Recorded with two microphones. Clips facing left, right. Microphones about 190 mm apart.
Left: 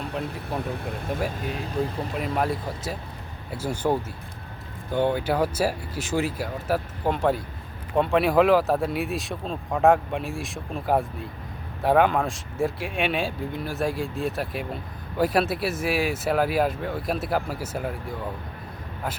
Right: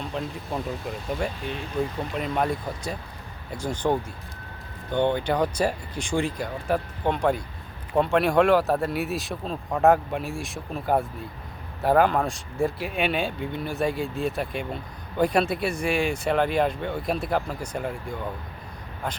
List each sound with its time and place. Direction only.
0.1 s speech: 5° left (ahead or behind)
0.6 s speech: 60° left (ahead or behind)
1.2 s speech: 5° left (ahead or behind)